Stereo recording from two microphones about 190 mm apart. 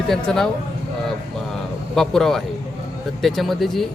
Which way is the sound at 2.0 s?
Centre (ahead or behind).